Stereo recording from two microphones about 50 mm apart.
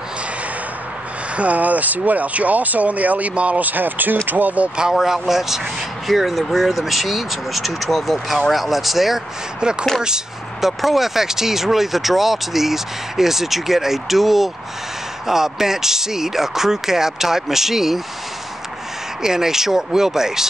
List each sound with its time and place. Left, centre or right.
1.3 s speech: right
5.0 s speech: centre
9.6 s speech: centre
19.2 s speech: centre